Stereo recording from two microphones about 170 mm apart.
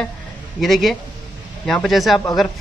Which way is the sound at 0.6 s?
Centre (ahead or behind).